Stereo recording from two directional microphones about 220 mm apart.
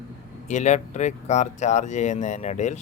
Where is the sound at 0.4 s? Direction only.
30° left (ahead or behind).